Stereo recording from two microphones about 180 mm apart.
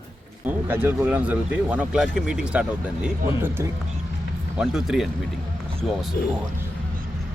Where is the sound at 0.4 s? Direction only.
10° right (ahead or behind).